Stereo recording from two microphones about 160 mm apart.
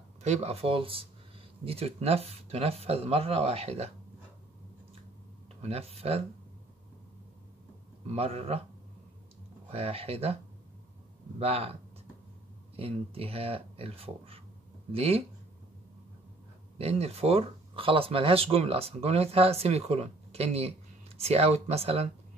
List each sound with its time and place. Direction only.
0.2 s speech: 40° right (ahead or behind)
5.6 s speech: 40° right (ahead or behind)
8.1 s speech: 40° right (ahead or behind)
9.7 s speech: 40° right (ahead or behind)
16.7 s speech: 40° right (ahead or behind)